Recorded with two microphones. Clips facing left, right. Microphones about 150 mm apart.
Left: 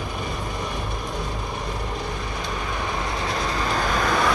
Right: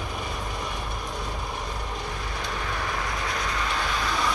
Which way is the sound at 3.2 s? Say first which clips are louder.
Left 4 dB; 30° left (ahead or behind).